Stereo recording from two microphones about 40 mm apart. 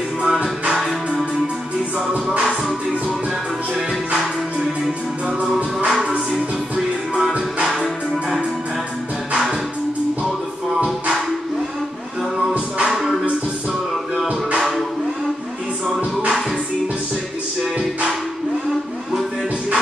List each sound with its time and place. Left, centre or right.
0.2 s music: centre
5.4 s music: right
5.9 s music: centre
12.5 s music: right
12.9 s music: centre
16.0 s music: right